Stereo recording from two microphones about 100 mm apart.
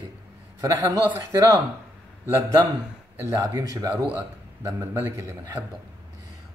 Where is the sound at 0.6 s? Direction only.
35° right (ahead or behind).